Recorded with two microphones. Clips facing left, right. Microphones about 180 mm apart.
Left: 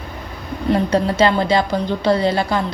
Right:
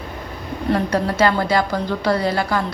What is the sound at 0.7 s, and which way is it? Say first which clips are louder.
A woman's voice: left 3 dB; 25° left (ahead or behind).